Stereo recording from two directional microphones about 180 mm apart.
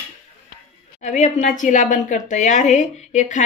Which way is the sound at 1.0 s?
40° left (ahead or behind).